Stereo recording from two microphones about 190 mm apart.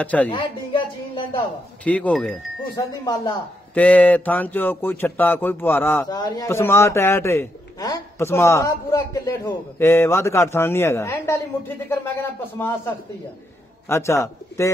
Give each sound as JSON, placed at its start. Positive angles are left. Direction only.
{"t": 0.0, "sound": "speech", "side_deg": 10}
{"t": 0.3, "sound": "a sound", "side_deg": 25}
{"t": 1.9, "sound": "speech", "side_deg": 5}
{"t": 2.7, "sound": "speech", "side_deg": 20}
{"t": 3.7, "sound": "speech", "side_deg": 10}
{"t": 6.0, "sound": "speech", "side_deg": 20}